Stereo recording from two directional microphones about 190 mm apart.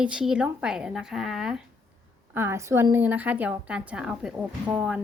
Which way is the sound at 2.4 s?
15° right (ahead or behind).